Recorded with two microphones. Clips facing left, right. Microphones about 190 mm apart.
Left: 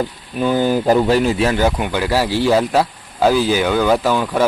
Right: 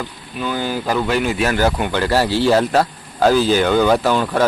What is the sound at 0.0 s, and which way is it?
Speech, 40° left (ahead or behind).